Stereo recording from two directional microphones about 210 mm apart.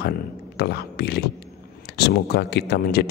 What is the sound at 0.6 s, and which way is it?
A man's voice, 50° left (ahead or behind).